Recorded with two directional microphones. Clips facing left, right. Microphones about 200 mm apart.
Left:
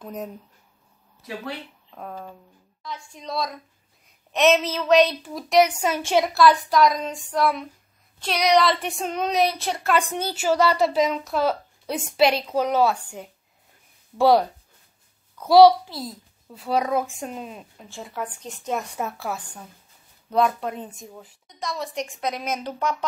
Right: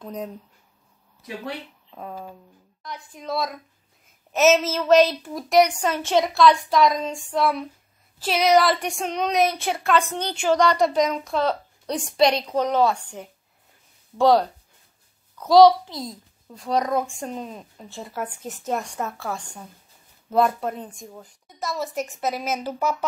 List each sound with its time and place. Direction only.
0.0 s a child's voice: 5° left (ahead or behind)
1.9 s speech: 5° right (ahead or behind)
2.8 s a woman's voice: 20° right (ahead or behind)
3.1 s a child's voice: 5° right (ahead or behind)